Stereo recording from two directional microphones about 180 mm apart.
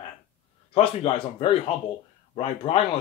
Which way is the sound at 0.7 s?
30° left (ahead or behind).